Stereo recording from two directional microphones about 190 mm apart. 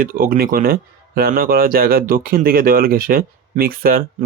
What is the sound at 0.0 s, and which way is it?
Speech, 50° right (ahead or behind).